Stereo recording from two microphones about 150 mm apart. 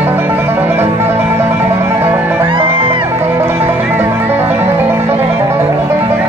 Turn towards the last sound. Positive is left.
turn(degrees=-15)  # may be behind; listen again after turning